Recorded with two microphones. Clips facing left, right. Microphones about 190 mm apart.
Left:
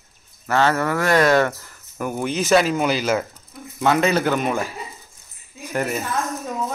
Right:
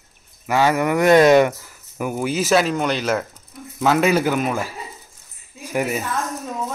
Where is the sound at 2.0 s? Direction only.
5° right (ahead or behind).